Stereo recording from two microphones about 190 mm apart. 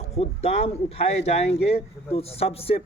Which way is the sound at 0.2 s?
30° left (ahead or behind).